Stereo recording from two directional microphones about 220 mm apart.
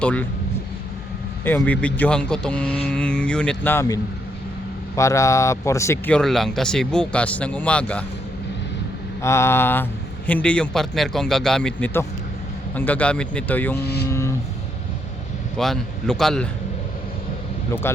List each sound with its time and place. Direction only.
0.0 s speech: 5° left (ahead or behind)
1.5 s speech: 10° left (ahead or behind)
9.2 s speech: 10° left (ahead or behind)
13.7 s speech: 45° left (ahead or behind)
14.1 s vehicle: 15° left (ahead or behind)
15.5 s speech: centre (ahead or behind)
17.8 s speech: 10° left (ahead or behind)